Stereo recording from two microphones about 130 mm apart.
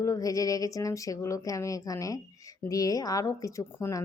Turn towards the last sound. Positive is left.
turn(degrees=20)  # may be behind; listen again after turning